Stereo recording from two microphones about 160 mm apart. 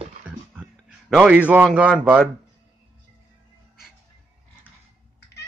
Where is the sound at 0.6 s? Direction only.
10° right (ahead or behind).